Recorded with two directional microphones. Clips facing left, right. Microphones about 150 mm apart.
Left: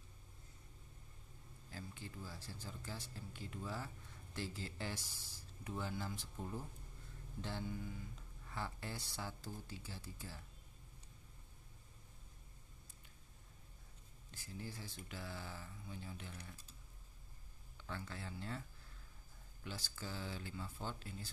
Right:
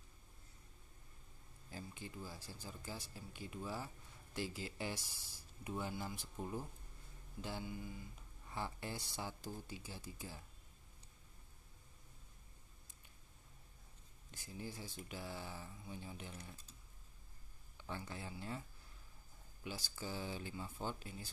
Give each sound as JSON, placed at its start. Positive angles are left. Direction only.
{"t": 1.7, "sound": "speech", "side_deg": -15}
{"t": 14.3, "sound": "speech", "side_deg": -15}
{"t": 17.7, "sound": "speech", "side_deg": -15}
{"t": 19.6, "sound": "speech", "side_deg": -15}